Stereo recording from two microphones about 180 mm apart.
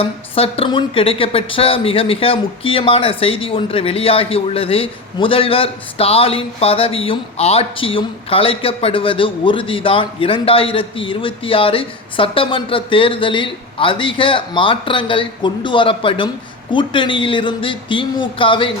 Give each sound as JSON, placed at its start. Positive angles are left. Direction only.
{"t": 0.0, "sound": "a woman's voice", "side_deg": 30}